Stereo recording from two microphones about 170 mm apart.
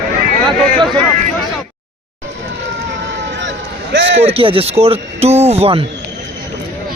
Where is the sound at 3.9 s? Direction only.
90° right.